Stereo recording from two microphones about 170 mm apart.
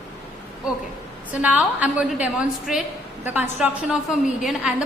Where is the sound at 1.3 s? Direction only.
10° right (ahead or behind).